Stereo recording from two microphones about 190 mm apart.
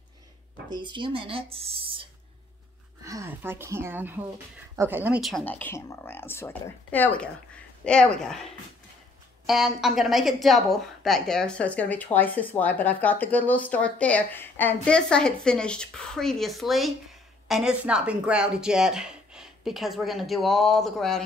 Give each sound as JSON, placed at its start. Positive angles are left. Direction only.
{"t": 0.7, "sound": "speech", "side_deg": -25}
{"t": 3.0, "sound": "speech", "side_deg": -15}
{"t": 5.4, "sound": "speech", "side_deg": 10}
{"t": 9.5, "sound": "speech", "side_deg": 0}